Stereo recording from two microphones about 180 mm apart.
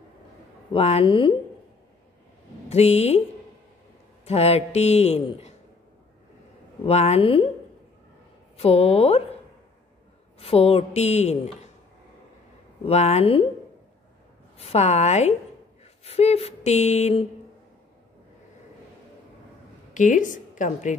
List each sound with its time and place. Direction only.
0.7 s speech: 35° left (ahead or behind)
2.7 s speech: 35° left (ahead or behind)
4.2 s speech: 35° left (ahead or behind)
6.8 s speech: 35° left (ahead or behind)
8.5 s speech: 35° left (ahead or behind)
10.4 s speech: 35° left (ahead or behind)
12.8 s speech: 35° left (ahead or behind)
14.6 s speech: 35° left (ahead or behind)
19.9 s a woman's voice: 45° left (ahead or behind)